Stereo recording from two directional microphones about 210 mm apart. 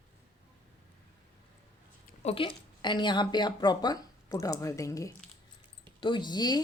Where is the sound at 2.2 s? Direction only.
30° left (ahead or behind).